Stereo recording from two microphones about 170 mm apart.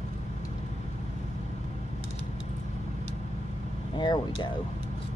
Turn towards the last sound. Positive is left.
turn(degrees=25)  # may be behind; listen again after turning